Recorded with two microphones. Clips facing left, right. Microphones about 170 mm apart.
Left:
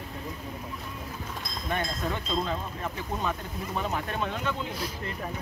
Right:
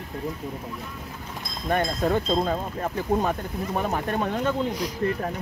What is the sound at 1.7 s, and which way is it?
Speech, 45° right (ahead or behind).